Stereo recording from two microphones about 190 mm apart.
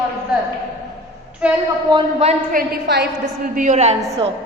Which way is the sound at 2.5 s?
55° right (ahead or behind).